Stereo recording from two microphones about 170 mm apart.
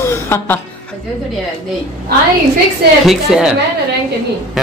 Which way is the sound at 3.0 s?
Centre (ahead or behind).